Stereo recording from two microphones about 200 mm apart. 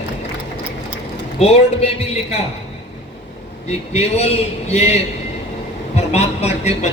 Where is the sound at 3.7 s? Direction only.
30° left (ahead or behind).